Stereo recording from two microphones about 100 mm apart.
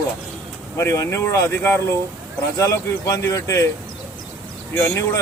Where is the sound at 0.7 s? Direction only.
30° left (ahead or behind).